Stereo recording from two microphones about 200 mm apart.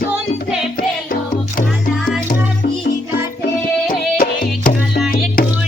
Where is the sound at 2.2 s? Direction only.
40° left (ahead or behind).